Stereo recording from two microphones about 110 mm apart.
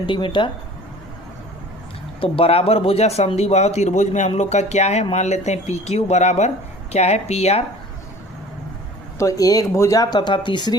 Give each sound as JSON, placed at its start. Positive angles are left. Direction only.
{"t": 0.0, "sound": "speech", "side_deg": 50}
{"t": 2.2, "sound": "speech", "side_deg": 60}
{"t": 6.9, "sound": "speech", "side_deg": 80}
{"t": 9.1, "sound": "speech", "side_deg": 30}